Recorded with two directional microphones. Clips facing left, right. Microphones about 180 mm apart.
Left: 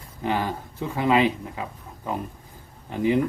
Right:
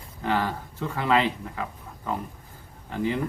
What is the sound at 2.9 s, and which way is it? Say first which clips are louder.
Speech: left 5 dB; 15° left (ahead or behind).